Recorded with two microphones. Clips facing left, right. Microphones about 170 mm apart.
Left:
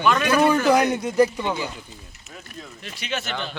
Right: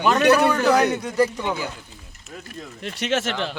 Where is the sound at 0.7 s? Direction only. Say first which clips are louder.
Even; 15° left (ahead or behind).